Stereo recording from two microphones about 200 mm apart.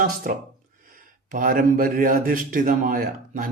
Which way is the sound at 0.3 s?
45° right (ahead or behind).